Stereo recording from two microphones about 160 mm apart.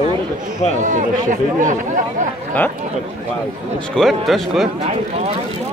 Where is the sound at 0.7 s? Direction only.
50° right (ahead or behind).